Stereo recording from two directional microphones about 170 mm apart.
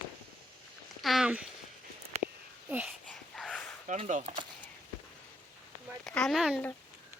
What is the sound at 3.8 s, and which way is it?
Speech, 45° right (ahead or behind).